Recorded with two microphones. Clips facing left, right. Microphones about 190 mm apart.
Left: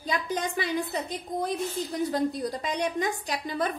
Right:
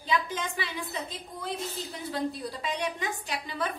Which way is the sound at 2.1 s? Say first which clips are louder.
Left 5 dB; 45° left (ahead or behind).